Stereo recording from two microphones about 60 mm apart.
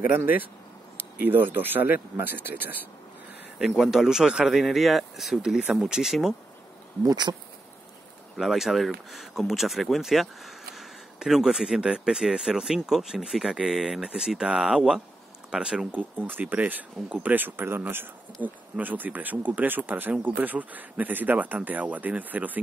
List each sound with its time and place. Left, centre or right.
0.9 s speech: right
3.5 s speech: centre
8.4 s speech: centre
15.9 s speech: right